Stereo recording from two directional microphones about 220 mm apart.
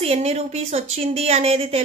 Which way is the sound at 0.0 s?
30° right (ahead or behind).